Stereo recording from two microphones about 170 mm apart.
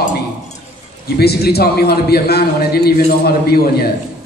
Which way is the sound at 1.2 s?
70° left (ahead or behind).